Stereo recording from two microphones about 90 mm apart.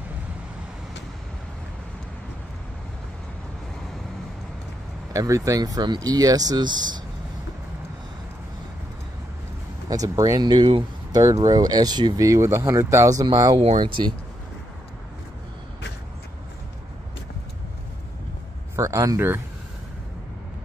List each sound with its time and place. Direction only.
5.1 s speech: 40° right (ahead or behind); by 7.0 s 55° right (ahead or behind)
9.8 s speech: 40° right (ahead or behind)
12.3 s speech: 30° right (ahead or behind)
13.6 s speech: 70° right (ahead or behind)
18.8 s speech: 35° right (ahead or behind)